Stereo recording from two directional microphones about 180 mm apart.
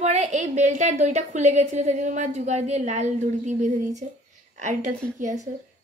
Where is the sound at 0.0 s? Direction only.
40° right (ahead or behind).